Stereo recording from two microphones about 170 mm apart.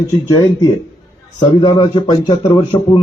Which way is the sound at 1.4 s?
25° left (ahead or behind).